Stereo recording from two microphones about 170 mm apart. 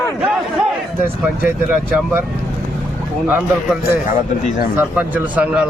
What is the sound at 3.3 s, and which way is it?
Speech, 10° right (ahead or behind).